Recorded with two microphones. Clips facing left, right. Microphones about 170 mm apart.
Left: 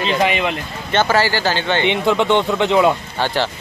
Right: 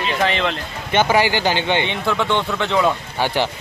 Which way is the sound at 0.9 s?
15° right (ahead or behind).